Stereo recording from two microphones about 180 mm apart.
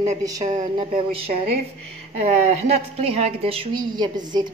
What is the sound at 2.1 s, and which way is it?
A woman's voice, 35° right (ahead or behind).